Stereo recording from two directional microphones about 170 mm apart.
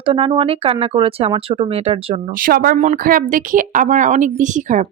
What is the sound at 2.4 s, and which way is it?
A woman's voice, 60° right (ahead or behind).